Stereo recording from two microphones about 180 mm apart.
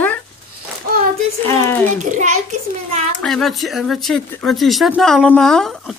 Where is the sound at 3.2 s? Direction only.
Centre (ahead or behind).